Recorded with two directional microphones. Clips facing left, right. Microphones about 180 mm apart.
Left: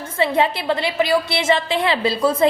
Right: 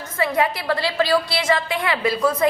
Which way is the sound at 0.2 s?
25° left (ahead or behind).